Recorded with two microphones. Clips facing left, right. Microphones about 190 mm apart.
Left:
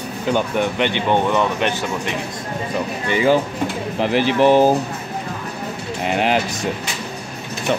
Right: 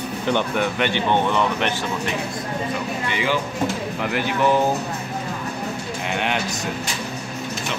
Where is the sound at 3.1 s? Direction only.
40° left (ahead or behind).